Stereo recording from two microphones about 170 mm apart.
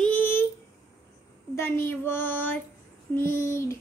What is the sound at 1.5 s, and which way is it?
Child singing, 15° left (ahead or behind).